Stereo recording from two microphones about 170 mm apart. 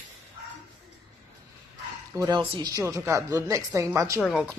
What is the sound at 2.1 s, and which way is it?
A woman's voice, 20° right (ahead or behind).